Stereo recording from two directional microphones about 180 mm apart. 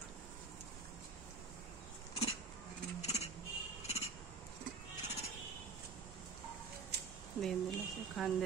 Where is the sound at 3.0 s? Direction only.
35° left (ahead or behind).